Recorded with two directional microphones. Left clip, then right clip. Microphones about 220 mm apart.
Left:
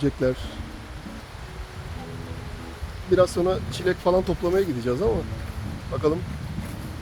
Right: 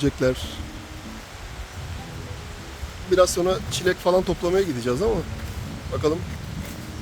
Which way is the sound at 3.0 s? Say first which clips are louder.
Right 1 dB; 20° right (ahead or behind).